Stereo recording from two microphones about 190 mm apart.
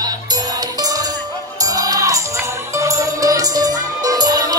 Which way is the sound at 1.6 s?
20° right (ahead or behind).